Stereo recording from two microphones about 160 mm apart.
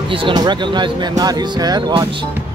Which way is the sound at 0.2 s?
30° right (ahead or behind).